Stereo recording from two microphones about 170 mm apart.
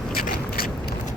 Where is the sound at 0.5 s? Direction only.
60° left (ahead or behind).